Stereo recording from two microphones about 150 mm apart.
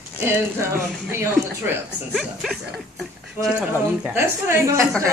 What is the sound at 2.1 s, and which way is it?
Dog, centre (ahead or behind).